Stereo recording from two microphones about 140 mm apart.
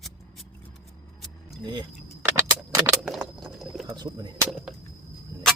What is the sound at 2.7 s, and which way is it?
Keys jangling, 20° right (ahead or behind).